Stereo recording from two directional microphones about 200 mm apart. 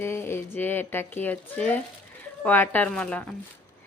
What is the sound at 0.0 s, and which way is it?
Speech, 10° left (ahead or behind).